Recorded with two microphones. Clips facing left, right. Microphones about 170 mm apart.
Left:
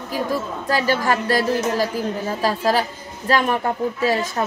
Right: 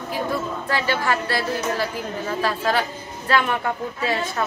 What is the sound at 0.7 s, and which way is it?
A woman's voice, 40° left (ahead or behind).